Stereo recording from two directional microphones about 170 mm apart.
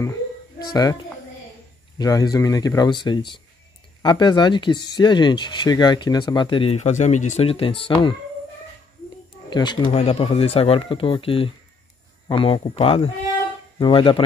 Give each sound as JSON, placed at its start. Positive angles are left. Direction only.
{"t": 2.0, "sound": "speech", "side_deg": 20}
{"t": 9.5, "sound": "speech", "side_deg": 25}